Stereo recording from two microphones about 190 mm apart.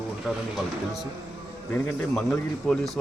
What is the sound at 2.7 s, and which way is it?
Speech, centre (ahead or behind).